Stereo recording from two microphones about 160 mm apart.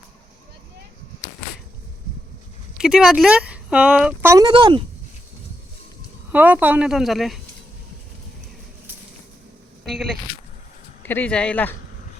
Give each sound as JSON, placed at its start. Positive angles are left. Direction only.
{"t": 2.8, "sound": "speech", "side_deg": -5}
{"t": 4.3, "sound": "speech", "side_deg": -25}
{"t": 6.3, "sound": "speech", "side_deg": -10}
{"t": 9.8, "sound": "speech", "side_deg": 0}
{"t": 11.0, "sound": "speech", "side_deg": 10}